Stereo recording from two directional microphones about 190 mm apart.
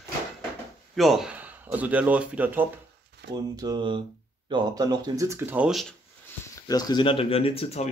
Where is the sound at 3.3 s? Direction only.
20° right (ahead or behind); by 5.9 s 5° right (ahead or behind).